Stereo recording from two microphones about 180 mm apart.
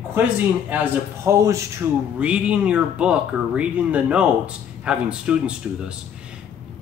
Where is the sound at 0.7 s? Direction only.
15° right (ahead or behind).